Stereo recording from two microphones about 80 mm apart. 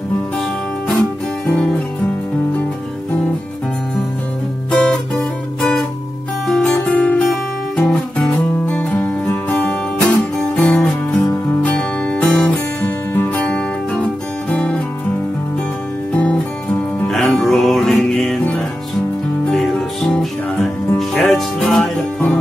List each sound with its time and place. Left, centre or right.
1.5 s music: centre
4.6 s guitar: centre
6.4 s music: centre
12.8 s music: left
16.1 s music: centre